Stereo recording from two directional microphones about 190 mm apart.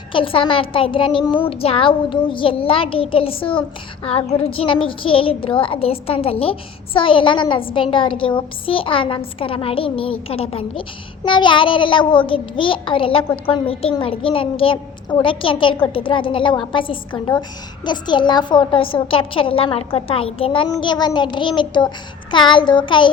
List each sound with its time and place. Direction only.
0.1 s a child's voice: 30° left (ahead or behind)